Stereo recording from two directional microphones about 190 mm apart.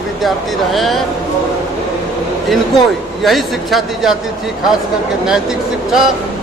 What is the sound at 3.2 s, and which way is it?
Speech, centre (ahead or behind).